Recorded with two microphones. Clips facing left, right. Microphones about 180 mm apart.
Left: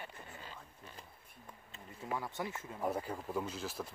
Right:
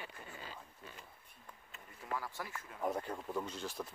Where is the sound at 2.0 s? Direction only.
20° left (ahead or behind).